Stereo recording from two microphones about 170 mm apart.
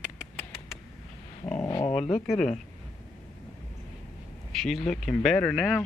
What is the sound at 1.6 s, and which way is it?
Dog, 20° left (ahead or behind).